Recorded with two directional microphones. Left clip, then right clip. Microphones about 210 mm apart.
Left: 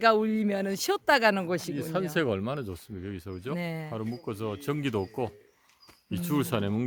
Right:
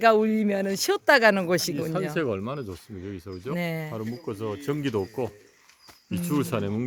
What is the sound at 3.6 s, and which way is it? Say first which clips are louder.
Speech: right 5 dB; 5° right (ahead or behind).